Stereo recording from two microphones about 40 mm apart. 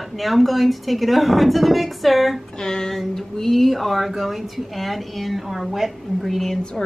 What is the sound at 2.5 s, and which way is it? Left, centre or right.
Speech, centre.